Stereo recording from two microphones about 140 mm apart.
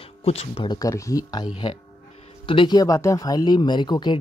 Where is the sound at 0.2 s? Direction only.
45° left (ahead or behind).